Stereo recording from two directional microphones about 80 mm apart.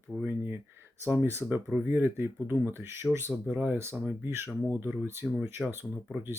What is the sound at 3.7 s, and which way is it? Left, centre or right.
Speech, right.